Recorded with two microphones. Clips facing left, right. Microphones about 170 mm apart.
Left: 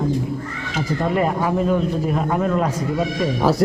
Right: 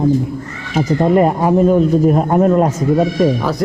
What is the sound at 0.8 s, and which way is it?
Speech, 45° right (ahead or behind).